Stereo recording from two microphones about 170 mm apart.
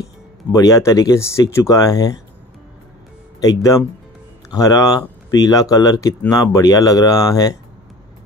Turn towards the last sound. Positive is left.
turn(degrees=20)  # may be behind; listen again after turning